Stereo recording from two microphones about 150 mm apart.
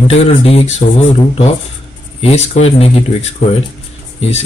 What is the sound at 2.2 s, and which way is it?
Speech, 45° left (ahead or behind).